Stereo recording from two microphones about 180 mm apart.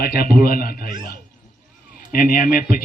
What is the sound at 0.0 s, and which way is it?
Speech, 60° left (ahead or behind).